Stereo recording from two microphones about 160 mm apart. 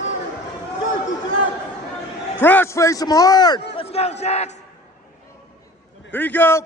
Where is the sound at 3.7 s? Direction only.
40° left (ahead or behind).